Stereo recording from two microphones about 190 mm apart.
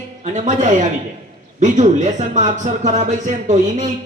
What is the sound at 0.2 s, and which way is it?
Speech, 40° right (ahead or behind).